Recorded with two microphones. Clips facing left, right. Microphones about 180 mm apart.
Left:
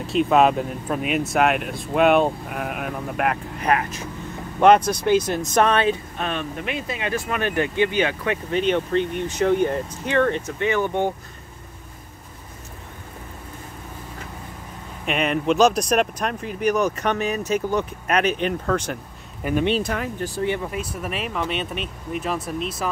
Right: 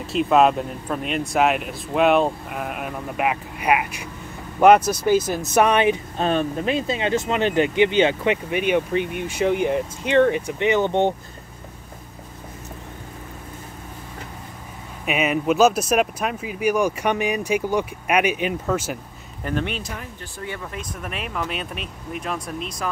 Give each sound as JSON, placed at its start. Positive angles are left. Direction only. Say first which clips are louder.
{"t": 0.0, "sound": "speech", "louder": "even", "side_deg": 0}
{"t": 6.1, "sound": "speech", "louder": "right 6 dB", "side_deg": -35}
{"t": 8.5, "sound": "speech", "louder": "even", "side_deg": -10}
{"t": 15.0, "sound": "speech", "louder": "even", "side_deg": -5}
{"t": 19.4, "sound": "speech", "louder": "left 3 dB", "side_deg": 10}
{"t": 19.8, "sound": "speech", "louder": "left 8 dB", "side_deg": 75}
{"t": 20.3, "sound": "speech", "louder": "left 7 dB", "side_deg": 25}
{"t": 20.7, "sound": "speech", "louder": "left 4 dB", "side_deg": 5}